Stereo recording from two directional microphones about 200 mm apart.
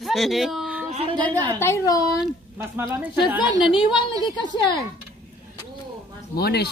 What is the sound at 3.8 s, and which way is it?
A woman's voice, 25° left (ahead or behind).